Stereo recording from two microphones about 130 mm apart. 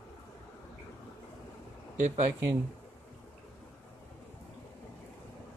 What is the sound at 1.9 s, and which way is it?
Speech, 70° right (ahead or behind).